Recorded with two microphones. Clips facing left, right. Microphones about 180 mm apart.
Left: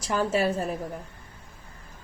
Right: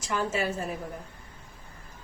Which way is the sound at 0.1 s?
35° left (ahead or behind).